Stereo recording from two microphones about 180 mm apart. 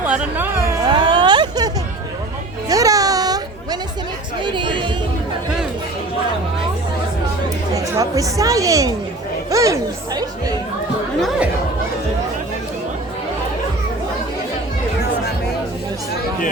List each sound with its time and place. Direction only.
0.0 s music: 10° right (ahead or behind)
0.9 s a sound: 25° right (ahead or behind)
2.6 s music: 20° right (ahead or behind)
4.4 s chatter: 25° right (ahead or behind)
7.7 s speech: 20° right (ahead or behind)
9.5 s chatter: 20° right (ahead or behind)